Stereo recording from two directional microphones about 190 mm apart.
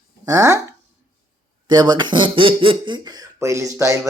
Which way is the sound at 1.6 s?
25° right (ahead or behind).